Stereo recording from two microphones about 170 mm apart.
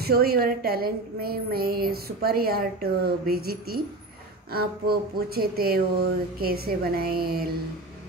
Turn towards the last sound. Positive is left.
turn(degrees=-60)  # may be behind; listen again after turning